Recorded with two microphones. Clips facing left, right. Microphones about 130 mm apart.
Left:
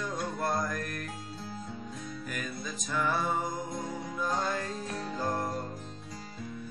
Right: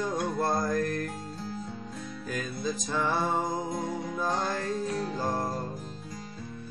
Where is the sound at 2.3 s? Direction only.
25° right (ahead or behind).